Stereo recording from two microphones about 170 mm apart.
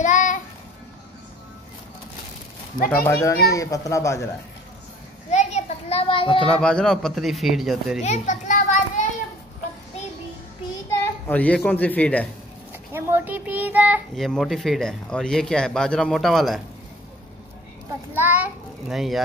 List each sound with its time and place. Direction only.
0.0 s child singing: 45° left (ahead or behind)
3.0 s a man's voice: 15° left (ahead or behind)
5.3 s children playing: 40° left (ahead or behind)
6.5 s speech: 5° left (ahead or behind)
8.0 s children playing: 45° left (ahead or behind)
11.2 s a man's voice: 10° left (ahead or behind)
12.9 s child singing: 10° right (ahead or behind)
14.1 s speech: centre (ahead or behind)
18.1 s a child's voice: 10° right (ahead or behind)